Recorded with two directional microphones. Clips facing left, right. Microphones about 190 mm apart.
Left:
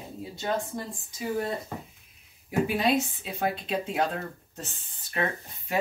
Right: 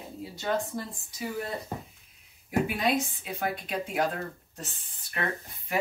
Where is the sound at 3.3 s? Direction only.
25° left (ahead or behind).